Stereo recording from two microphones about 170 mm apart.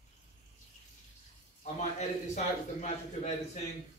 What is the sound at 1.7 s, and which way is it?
A man's voice, 40° left (ahead or behind).